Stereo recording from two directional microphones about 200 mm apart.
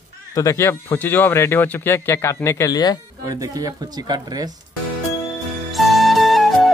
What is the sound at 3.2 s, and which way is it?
Speech, 15° right (ahead or behind).